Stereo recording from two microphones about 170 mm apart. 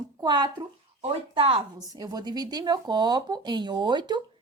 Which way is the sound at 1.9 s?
20° right (ahead or behind).